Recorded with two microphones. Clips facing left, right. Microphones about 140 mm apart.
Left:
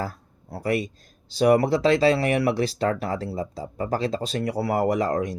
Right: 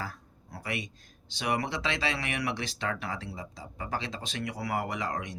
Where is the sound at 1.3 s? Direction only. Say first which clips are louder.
Left 13 dB; 35° left (ahead or behind).